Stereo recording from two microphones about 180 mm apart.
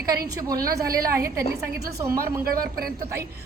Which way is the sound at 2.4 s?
55° right (ahead or behind).